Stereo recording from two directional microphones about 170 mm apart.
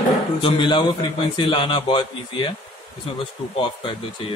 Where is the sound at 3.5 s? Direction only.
30° left (ahead or behind).